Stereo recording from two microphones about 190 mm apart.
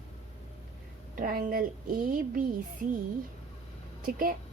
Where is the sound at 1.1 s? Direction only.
50° right (ahead or behind).